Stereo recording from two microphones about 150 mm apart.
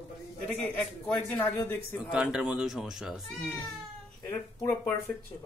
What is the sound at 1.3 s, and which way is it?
Speech, 10° left (ahead or behind).